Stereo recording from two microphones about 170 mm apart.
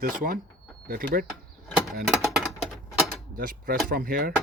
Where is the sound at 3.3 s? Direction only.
55° right (ahead or behind).